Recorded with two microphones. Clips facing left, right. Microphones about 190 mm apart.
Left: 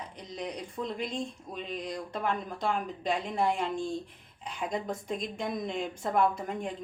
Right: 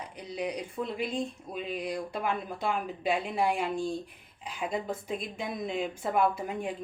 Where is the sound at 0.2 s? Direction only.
10° right (ahead or behind).